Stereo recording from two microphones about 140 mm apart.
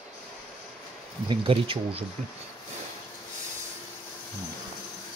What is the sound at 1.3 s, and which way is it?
Speech, 40° right (ahead or behind).